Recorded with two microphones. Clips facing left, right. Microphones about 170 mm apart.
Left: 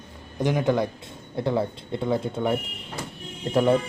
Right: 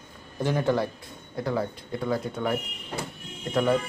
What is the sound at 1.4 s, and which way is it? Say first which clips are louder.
Speech: left 3 dB; 25° left (ahead or behind).